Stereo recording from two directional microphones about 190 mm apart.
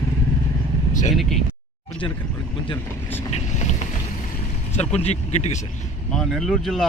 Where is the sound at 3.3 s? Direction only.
35° left (ahead or behind).